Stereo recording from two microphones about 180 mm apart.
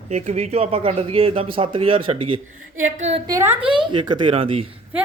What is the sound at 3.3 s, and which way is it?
Speech, 15° right (ahead or behind).